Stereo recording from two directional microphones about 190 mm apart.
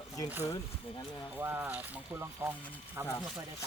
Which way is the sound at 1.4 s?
10° right (ahead or behind).